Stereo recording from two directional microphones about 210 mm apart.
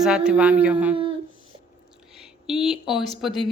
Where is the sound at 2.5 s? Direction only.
Centre (ahead or behind).